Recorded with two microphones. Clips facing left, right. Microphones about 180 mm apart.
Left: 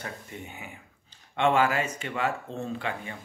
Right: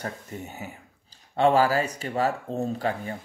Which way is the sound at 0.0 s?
40° right (ahead or behind).